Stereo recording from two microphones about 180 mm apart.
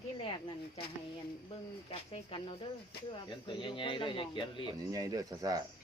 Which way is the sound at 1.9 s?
30° left (ahead or behind).